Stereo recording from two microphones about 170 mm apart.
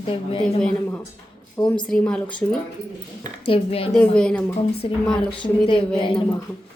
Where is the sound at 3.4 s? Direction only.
35° left (ahead or behind).